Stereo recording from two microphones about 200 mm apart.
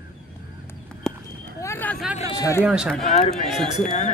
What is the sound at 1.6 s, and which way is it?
Vehicle, 10° left (ahead or behind).